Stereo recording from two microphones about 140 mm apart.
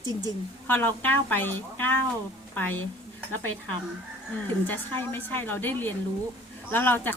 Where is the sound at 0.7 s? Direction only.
15° left (ahead or behind).